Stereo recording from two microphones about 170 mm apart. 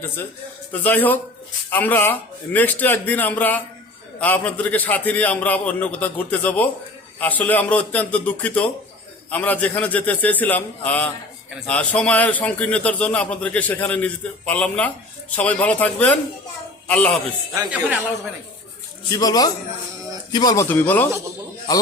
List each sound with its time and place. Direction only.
0.7 s a man's voice: 10° left (ahead or behind)
17.7 s speech: 10° right (ahead or behind)
19.1 s a man's voice: 20° left (ahead or behind)
20.7 s a man's voice: 10° left (ahead or behind)